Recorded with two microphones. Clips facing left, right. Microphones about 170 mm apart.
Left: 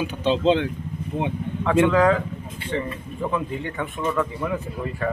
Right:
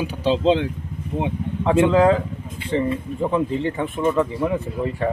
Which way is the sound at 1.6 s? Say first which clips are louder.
Right 2 dB; 30° right (ahead or behind).